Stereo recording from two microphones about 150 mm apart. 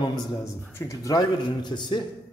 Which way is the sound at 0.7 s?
20° left (ahead or behind).